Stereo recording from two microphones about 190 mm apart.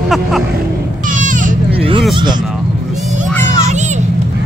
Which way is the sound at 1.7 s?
30° right (ahead or behind).